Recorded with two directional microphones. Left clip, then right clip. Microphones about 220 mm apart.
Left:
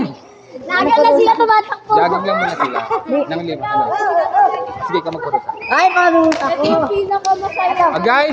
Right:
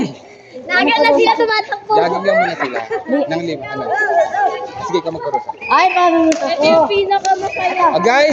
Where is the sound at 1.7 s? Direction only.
Centre (ahead or behind).